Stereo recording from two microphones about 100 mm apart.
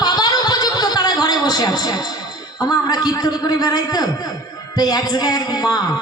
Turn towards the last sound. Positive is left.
turn(degrees=40)  # may be behind; listen again after turning